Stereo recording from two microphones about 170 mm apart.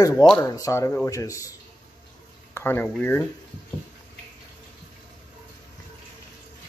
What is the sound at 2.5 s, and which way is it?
Speech, 15° left (ahead or behind).